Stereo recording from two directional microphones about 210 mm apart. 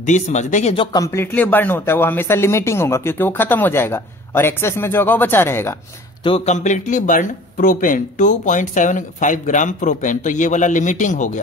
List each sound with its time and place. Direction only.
0.0 s speech: 35° left (ahead or behind)
0.9 s speech: 15° left (ahead or behind)
6.2 s speech: 30° left (ahead or behind)